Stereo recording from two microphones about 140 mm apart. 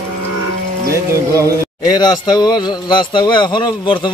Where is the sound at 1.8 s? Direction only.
30° left (ahead or behind).